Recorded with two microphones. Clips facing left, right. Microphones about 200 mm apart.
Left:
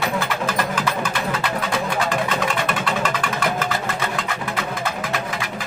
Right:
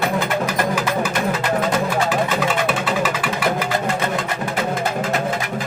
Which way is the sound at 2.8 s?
5° right (ahead or behind).